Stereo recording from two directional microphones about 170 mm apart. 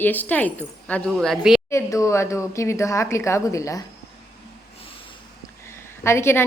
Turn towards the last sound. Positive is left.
turn(degrees=15)  # may be behind; listen again after turning